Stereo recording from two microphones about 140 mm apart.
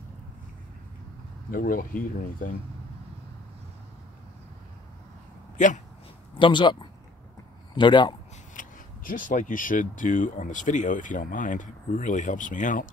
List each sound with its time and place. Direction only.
1.5 s speech: 90° left
5.6 s speech: 65° left (ahead or behind)
6.3 s speech: 35° left (ahead or behind)
8.5 s speech: 70° left (ahead or behind)